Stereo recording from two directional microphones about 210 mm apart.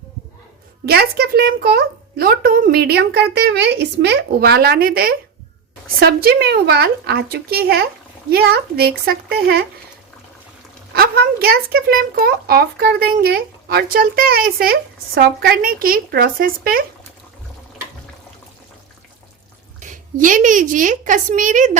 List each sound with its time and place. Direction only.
0.9 s speech: 50° right (ahead or behind)
10.9 s speech: 45° right (ahead or behind)
19.8 s a woman's voice: 40° right (ahead or behind)